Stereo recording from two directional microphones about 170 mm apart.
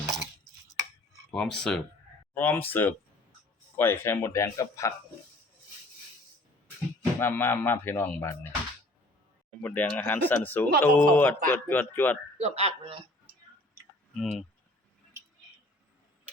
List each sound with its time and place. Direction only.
1.3 s speech: 5° left (ahead or behind); by 4.9 s 20° left (ahead or behind)
7.0 s speech: 15° left (ahead or behind)
9.5 s speech: 5° left (ahead or behind)
12.4 s a man's voice: 40° right (ahead or behind)
14.1 s speech: centre (ahead or behind)